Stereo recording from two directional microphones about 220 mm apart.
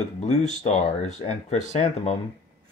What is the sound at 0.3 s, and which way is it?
Speech, 30° left (ahead or behind).